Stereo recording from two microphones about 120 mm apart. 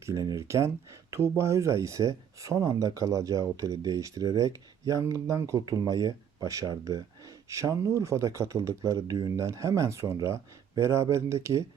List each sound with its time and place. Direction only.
0.0 s speech: 30° right (ahead or behind)